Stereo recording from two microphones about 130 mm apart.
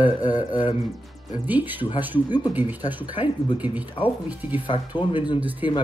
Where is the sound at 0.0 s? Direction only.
30° left (ahead or behind).